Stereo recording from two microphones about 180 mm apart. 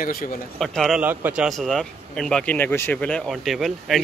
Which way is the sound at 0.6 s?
Centre (ahead or behind).